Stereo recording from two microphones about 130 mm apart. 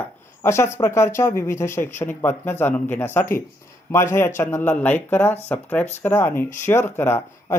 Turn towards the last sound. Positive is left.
turn(degrees=20)  # may be behind; listen again after turning